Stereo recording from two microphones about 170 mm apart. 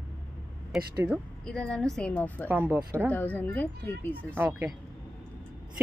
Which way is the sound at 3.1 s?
10° left (ahead or behind).